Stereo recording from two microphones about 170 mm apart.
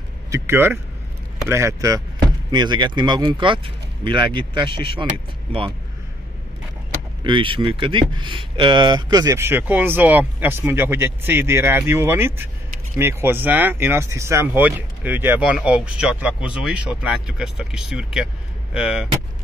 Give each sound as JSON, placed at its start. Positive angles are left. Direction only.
{"t": 0.3, "sound": "speech", "side_deg": -15}
{"t": 7.2, "sound": "speech", "side_deg": -30}